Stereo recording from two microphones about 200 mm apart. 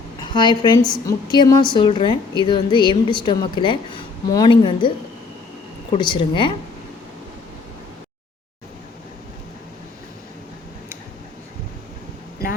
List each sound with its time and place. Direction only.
0.3 s a woman's voice: 20° left (ahead or behind)
5.9 s a woman's voice: 25° left (ahead or behind)